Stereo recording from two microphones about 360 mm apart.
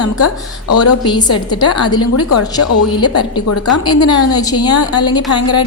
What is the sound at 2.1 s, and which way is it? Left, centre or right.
A woman's voice, left.